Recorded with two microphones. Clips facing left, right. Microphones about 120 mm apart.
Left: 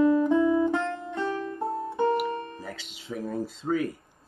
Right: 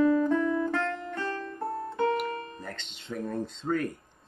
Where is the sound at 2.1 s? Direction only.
5° left (ahead or behind).